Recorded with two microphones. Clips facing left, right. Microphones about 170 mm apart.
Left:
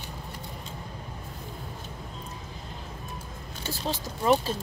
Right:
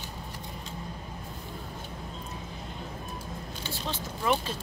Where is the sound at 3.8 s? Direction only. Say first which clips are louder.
Left 4 dB; 30° left (ahead or behind).